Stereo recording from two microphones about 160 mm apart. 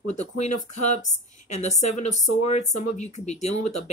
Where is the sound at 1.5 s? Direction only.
45° left (ahead or behind).